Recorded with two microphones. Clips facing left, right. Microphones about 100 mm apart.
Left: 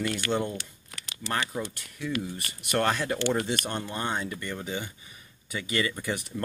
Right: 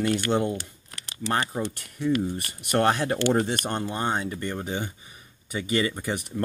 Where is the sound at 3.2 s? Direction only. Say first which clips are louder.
Right 4 dB; 55° right (ahead or behind).